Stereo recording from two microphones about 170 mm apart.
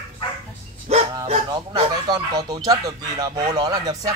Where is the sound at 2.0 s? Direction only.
25° right (ahead or behind).